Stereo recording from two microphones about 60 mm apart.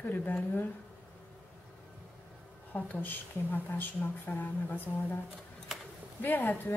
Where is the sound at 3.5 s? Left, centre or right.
Left.